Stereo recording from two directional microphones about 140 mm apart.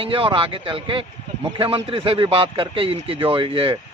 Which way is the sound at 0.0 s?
40° right (ahead or behind).